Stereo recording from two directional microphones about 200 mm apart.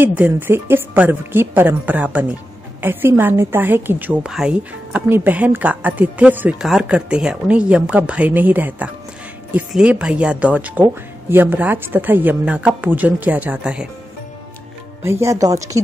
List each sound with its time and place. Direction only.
0.0 s a woman's voice: 10° right (ahead or behind)
15.0 s a woman's voice: 15° right (ahead or behind)